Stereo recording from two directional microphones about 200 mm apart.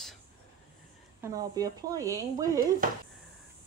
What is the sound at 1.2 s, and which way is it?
Speech, 20° right (ahead or behind).